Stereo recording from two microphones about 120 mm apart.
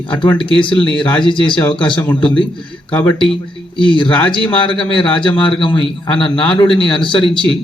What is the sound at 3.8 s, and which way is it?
A man's voice, 45° left (ahead or behind).